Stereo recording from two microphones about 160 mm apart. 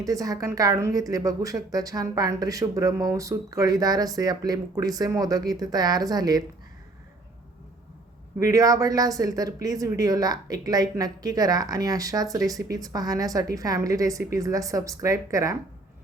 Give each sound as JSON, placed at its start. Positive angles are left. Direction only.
{"t": 0.0, "sound": "a woman's voice", "side_deg": -20}
{"t": 8.4, "sound": "a woman's voice", "side_deg": -20}